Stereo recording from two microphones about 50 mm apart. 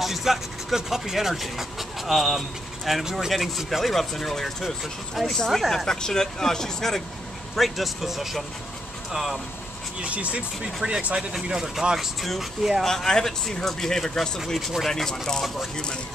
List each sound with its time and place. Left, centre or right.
0.0 s vehicle: centre
0.7 s speech: centre
10.0 s speech: right
11.5 s speech: centre
12.8 s speech: centre